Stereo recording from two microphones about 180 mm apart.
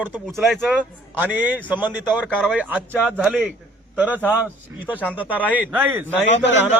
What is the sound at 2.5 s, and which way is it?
Speech, 5° right (ahead or behind).